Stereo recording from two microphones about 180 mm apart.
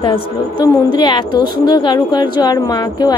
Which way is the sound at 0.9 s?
25° left (ahead or behind).